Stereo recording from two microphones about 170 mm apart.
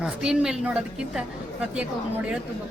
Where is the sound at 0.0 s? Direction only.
5° right (ahead or behind).